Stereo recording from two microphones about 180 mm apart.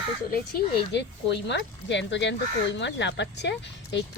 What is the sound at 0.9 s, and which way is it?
Speech, 70° left (ahead or behind).